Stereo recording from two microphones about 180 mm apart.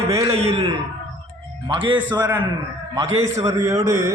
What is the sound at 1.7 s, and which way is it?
Speech, 25° right (ahead or behind).